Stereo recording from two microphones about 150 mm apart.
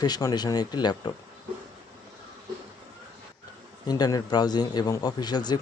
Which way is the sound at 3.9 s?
25° left (ahead or behind).